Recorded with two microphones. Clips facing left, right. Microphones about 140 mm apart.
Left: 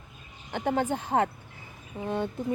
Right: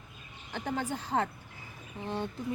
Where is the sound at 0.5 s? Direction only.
55° left (ahead or behind).